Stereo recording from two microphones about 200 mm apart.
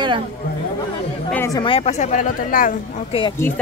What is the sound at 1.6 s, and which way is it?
Speech, 25° left (ahead or behind).